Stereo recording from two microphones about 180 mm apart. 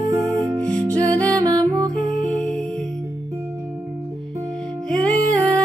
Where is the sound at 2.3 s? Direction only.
5° left (ahead or behind).